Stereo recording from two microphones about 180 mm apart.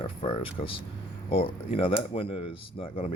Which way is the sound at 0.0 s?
30° left (ahead or behind).